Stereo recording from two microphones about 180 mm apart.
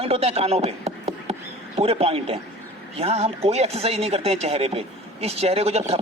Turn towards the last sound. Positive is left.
turn(degrees=-35)  # may be behind; listen again after turning